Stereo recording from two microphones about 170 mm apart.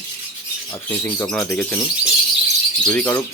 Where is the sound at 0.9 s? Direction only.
10° left (ahead or behind).